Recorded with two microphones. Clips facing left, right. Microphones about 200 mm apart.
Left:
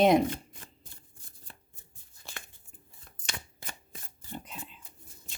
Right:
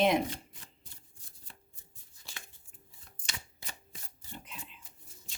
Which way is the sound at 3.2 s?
55° left (ahead or behind).